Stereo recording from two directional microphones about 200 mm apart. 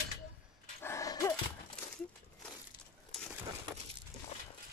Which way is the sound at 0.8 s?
15° left (ahead or behind).